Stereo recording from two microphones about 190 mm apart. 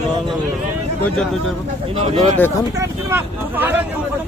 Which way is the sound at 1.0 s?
5° left (ahead or behind).